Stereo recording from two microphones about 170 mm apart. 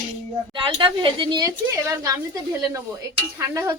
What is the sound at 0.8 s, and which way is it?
Speech, 30° right (ahead or behind).